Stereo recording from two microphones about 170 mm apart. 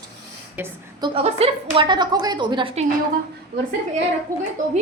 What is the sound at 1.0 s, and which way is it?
A woman's voice, 35° right (ahead or behind).